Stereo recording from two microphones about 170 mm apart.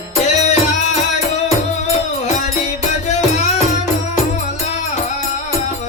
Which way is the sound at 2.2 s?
45° left (ahead or behind).